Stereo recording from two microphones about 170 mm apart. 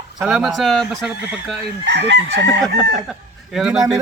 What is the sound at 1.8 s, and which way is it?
Chicken, 90° right.